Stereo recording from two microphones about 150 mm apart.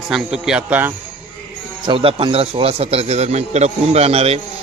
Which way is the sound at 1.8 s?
40° right (ahead or behind).